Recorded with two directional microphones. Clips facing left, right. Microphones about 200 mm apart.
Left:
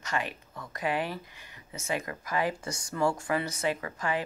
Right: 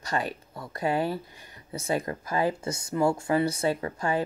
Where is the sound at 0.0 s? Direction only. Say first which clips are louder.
Right 3 dB; 35° right (ahead or behind).